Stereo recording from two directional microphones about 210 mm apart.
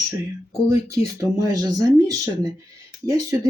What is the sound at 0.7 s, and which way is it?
Speech, 15° right (ahead or behind).